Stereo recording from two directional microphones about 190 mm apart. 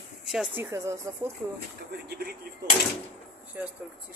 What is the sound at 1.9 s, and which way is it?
Speech, 55° right (ahead or behind).